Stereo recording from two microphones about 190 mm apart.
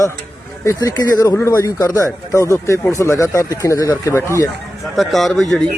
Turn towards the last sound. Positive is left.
turn(degrees=0)  # may be behind; listen again after turning